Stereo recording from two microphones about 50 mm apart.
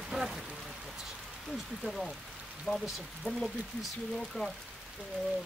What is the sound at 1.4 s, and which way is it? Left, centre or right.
Speech, centre.